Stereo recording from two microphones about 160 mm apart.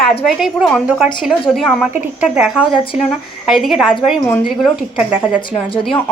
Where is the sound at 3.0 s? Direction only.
Centre (ahead or behind).